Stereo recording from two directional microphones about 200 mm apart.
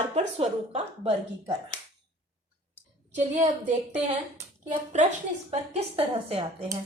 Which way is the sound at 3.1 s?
35° right (ahead or behind).